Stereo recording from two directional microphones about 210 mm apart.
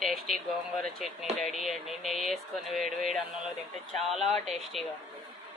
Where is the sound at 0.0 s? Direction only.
Centre (ahead or behind).